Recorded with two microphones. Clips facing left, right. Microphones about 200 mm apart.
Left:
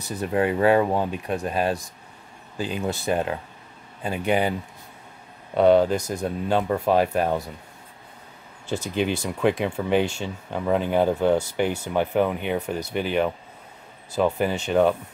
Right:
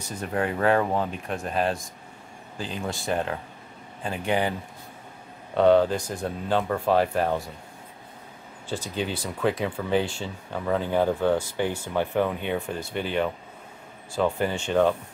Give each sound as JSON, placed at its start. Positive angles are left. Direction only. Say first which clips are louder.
{"t": 0.3, "sound": "speech", "louder": "left 4 dB", "side_deg": 15}
{"t": 2.6, "sound": "speech", "louder": "left 5 dB", "side_deg": 10}
{"t": 8.6, "sound": "speech", "louder": "left 5 dB", "side_deg": 25}